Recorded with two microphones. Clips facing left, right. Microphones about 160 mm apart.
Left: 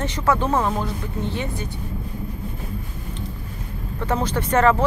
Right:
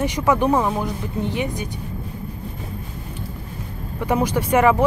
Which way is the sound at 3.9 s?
10° right (ahead or behind).